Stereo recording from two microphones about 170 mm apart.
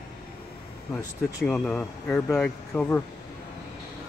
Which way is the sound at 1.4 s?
10° left (ahead or behind).